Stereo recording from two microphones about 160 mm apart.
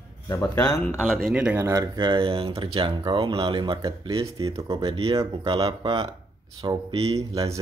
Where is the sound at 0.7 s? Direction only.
5° left (ahead or behind); by 6.1 s 30° right (ahead or behind).